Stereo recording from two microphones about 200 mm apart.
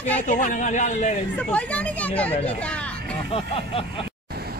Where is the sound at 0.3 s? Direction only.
40° left (ahead or behind).